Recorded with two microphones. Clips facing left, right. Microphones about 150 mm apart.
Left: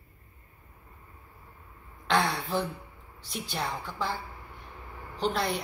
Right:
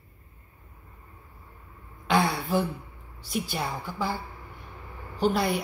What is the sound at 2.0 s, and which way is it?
Throat clearing, 5° right (ahead or behind).